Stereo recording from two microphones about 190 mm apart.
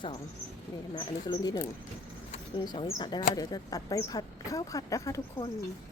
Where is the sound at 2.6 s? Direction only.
25° left (ahead or behind).